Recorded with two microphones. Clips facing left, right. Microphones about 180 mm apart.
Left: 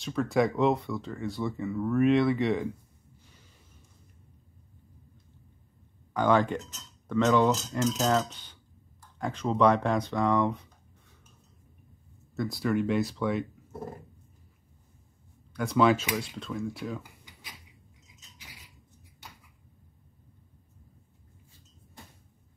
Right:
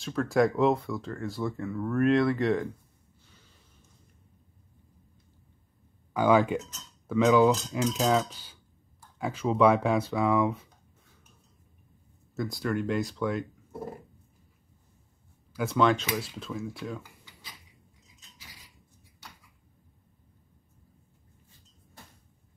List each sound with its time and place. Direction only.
0.0 s speech: centre (ahead or behind)
6.1 s speech: 5° right (ahead or behind)
12.4 s speech: centre (ahead or behind)
15.5 s speech: centre (ahead or behind)